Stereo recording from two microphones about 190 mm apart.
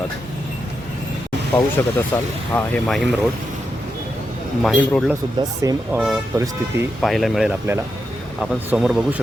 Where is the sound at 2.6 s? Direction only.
5° left (ahead or behind).